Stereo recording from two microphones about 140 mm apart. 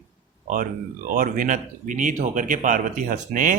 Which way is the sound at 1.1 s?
65° right (ahead or behind).